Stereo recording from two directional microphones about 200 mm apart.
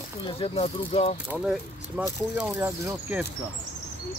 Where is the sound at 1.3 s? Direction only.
5° right (ahead or behind).